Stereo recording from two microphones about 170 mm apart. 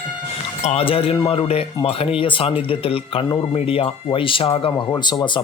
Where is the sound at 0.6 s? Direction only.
40° left (ahead or behind).